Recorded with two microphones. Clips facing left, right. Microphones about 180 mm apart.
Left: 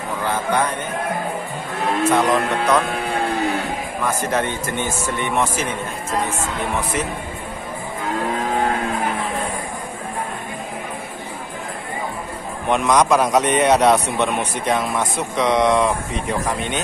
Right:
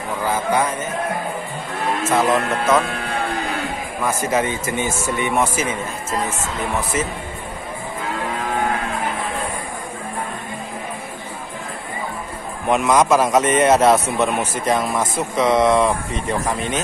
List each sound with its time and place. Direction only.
0.2 s a man's voice: 5° right (ahead or behind)
2.0 s a man's voice: centre (ahead or behind)
4.0 s a man's voice: 5° right (ahead or behind)
12.6 s a man's voice: 5° right (ahead or behind)